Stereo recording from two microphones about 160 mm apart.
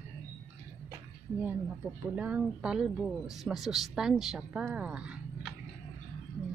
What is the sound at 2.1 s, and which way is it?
A woman's voice, 5° right (ahead or behind).